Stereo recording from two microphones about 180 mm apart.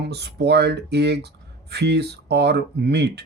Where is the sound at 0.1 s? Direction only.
65° right (ahead or behind).